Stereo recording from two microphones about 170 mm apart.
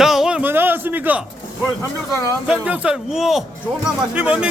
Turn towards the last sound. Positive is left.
turn(degrees=-5)  # may be behind; listen again after turning